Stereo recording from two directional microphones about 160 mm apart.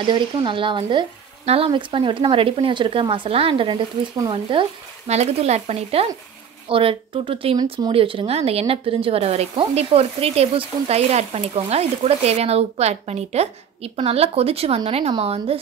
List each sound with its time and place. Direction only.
0.0 s speech: 30° right (ahead or behind)